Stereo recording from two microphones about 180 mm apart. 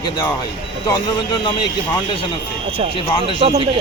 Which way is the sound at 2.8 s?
35° right (ahead or behind).